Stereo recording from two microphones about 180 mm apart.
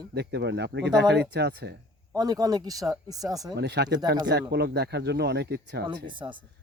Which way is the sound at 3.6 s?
70° right (ahead or behind).